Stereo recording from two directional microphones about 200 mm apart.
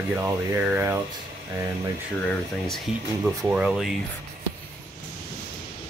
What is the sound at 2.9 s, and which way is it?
Speech, 5° right (ahead or behind).